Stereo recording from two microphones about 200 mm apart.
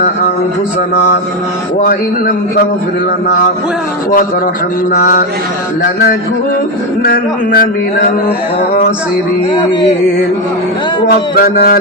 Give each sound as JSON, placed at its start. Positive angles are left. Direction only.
{"t": 1.8, "sound": "a man's voice", "side_deg": 45}
{"t": 4.9, "sound": "a man's voice", "side_deg": 45}
{"t": 7.0, "sound": "a man's voice", "side_deg": 45}
{"t": 11.1, "sound": "a man's voice", "side_deg": 50}